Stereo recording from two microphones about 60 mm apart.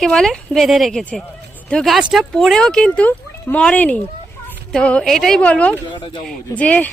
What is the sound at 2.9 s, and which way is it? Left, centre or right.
Speech, left.